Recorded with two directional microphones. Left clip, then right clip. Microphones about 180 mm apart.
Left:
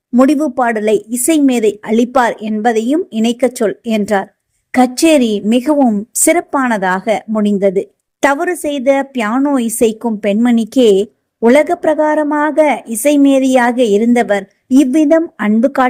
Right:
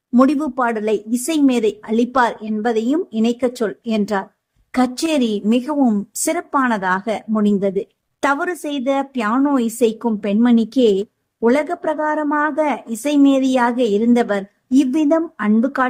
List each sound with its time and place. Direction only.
0.2 s speech: 15° left (ahead or behind)